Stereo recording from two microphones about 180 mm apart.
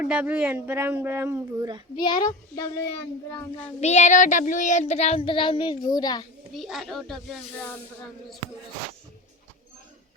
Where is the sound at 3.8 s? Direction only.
40° left (ahead or behind); by 6.2 s 20° left (ahead or behind).